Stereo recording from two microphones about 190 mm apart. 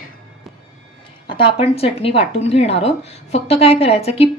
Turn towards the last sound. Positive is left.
turn(degrees=30)  # may be behind; listen again after turning